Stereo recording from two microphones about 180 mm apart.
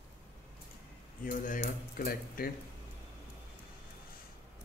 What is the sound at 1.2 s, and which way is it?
Speech, 45° left (ahead or behind).